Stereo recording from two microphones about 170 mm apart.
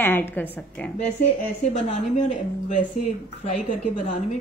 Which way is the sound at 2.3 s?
45° left (ahead or behind).